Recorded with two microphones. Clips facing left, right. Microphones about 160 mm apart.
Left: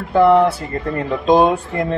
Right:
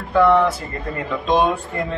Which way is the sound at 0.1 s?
30° left (ahead or behind).